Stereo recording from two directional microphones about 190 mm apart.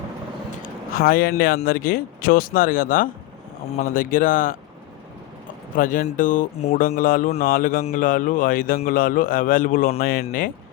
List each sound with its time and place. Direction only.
0.6 s a man's voice: 50° left (ahead or behind)
5.7 s a man's voice: 45° left (ahead or behind)